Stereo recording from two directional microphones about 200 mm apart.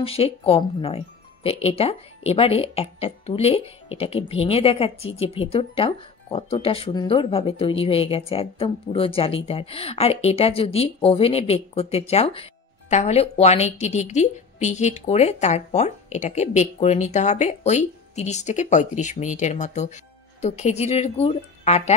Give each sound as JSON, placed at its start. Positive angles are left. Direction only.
{"t": 0.0, "sound": "speech", "side_deg": 30}